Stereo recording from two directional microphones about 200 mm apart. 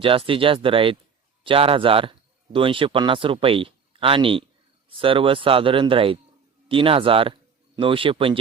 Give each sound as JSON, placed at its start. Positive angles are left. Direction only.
{"t": 0.0, "sound": "speech", "side_deg": -25}